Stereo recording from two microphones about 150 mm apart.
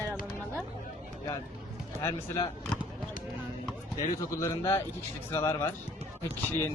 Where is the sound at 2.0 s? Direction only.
20° left (ahead or behind).